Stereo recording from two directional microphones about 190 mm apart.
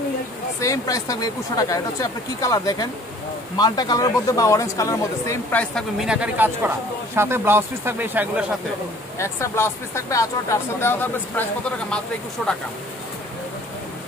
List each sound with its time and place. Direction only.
0.6 s speech: 15° left (ahead or behind); by 8.5 s 10° right (ahead or behind)
9.2 s speech: 15° left (ahead or behind)